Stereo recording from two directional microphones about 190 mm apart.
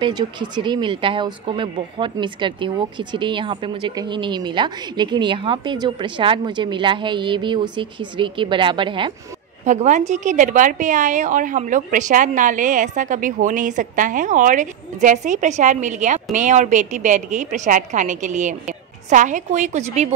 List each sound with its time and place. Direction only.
0.0 s a woman's voice: 25° right (ahead or behind)
9.7 s a woman's voice: 40° right (ahead or behind)